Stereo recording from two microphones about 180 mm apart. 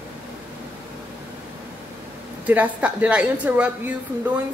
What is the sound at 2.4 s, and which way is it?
A woman's voice, 10° right (ahead or behind).